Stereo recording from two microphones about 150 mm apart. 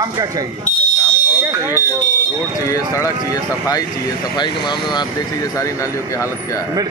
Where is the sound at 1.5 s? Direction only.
15° right (ahead or behind).